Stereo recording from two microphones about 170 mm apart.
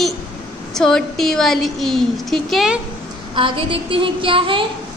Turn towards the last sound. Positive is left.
turn(degrees=-30)  # may be behind; listen again after turning